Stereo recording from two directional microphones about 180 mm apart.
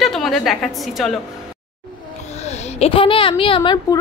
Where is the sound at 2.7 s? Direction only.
30° left (ahead or behind).